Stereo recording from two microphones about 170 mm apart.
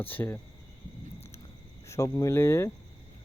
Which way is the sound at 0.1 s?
10° left (ahead or behind).